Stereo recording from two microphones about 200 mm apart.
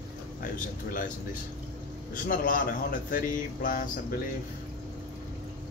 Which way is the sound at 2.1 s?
45° left (ahead or behind).